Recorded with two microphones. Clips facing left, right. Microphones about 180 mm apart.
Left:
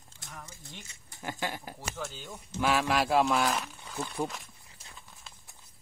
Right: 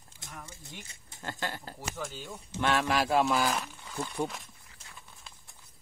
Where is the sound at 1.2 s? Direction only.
15° left (ahead or behind).